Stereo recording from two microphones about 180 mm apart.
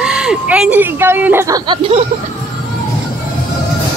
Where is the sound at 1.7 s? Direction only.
30° right (ahead or behind).